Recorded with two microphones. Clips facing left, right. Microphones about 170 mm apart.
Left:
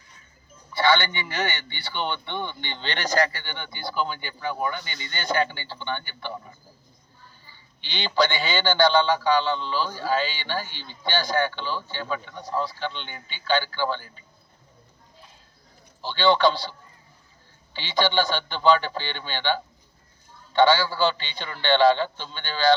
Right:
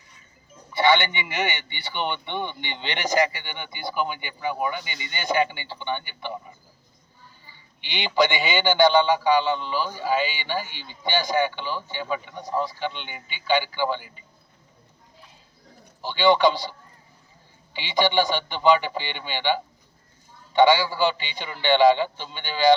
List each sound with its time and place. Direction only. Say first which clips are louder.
0.7 s a man's voice: right 2 dB; 20° right (ahead or behind)
7.5 s a man's voice: right 2 dB; 15° right (ahead or behind)
16.0 s a man's voice: right 2 dB; 15° right (ahead or behind)
17.7 s a man's voice: right 2 dB; 15° right (ahead or behind)